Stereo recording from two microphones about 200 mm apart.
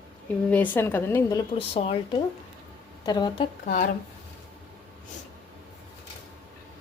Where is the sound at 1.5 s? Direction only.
30° left (ahead or behind).